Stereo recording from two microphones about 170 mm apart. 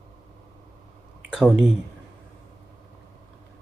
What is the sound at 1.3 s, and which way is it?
Speech, 5° right (ahead or behind).